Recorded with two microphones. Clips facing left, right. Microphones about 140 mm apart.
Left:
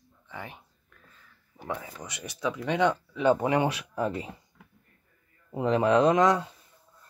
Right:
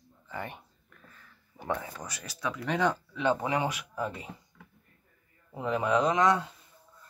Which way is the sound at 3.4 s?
30° left (ahead or behind).